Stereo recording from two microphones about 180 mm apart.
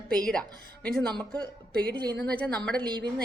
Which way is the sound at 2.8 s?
25° right (ahead or behind).